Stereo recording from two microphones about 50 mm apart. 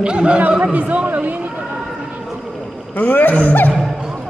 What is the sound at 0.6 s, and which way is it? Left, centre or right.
Speech, right.